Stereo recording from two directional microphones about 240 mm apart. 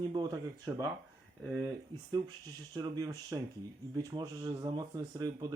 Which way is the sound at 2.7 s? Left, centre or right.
Centre.